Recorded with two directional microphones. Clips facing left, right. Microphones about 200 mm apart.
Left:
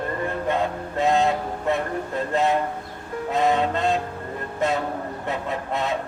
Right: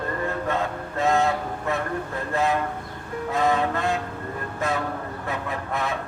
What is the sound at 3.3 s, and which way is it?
Music, 20° left (ahead or behind).